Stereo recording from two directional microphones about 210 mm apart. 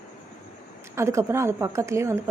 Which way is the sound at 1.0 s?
15° right (ahead or behind).